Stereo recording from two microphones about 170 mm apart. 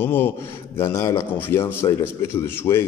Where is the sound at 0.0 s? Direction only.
10° left (ahead or behind).